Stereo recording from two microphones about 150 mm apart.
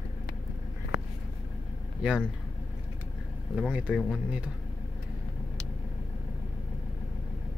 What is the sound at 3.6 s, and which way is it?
Speech, 10° right (ahead or behind).